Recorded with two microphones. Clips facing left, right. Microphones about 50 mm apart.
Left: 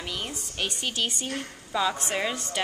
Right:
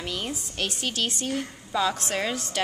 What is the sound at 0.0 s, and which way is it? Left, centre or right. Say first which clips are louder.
A woman's voice: right 2 dB; centre.